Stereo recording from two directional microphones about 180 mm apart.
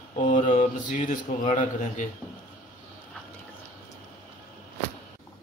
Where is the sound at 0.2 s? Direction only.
45° left (ahead or behind).